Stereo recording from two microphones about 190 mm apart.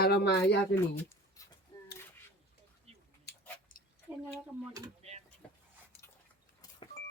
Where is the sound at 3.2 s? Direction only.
45° left (ahead or behind).